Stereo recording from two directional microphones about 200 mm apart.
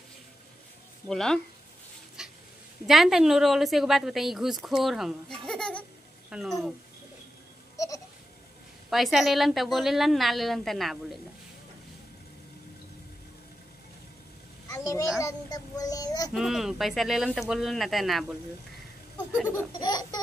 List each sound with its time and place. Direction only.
1.0 s a woman's voice: 5° left (ahead or behind)
2.2 s a sound: 5° right (ahead or behind)
2.9 s a woman's voice: centre (ahead or behind)
7.7 s goat: 15° left (ahead or behind)
8.9 s a woman's voice: centre (ahead or behind)
14.7 s a child's voice: 15° left (ahead or behind)
16.3 s a woman's voice: centre (ahead or behind)
19.7 s laughter: 20° left (ahead or behind)